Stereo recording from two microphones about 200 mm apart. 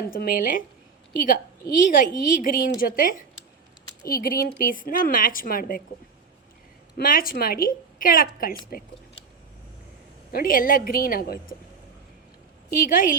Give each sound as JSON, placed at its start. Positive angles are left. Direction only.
{"t": 0.1, "sound": "a woman's voice", "side_deg": 45}
{"t": 6.9, "sound": "a woman's voice", "side_deg": 45}
{"t": 10.3, "sound": "a woman's voice", "side_deg": 45}
{"t": 12.9, "sound": "a woman's voice", "side_deg": 45}